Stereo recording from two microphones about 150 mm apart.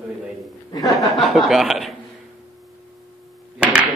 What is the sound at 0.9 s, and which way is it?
Speech, centre (ahead or behind).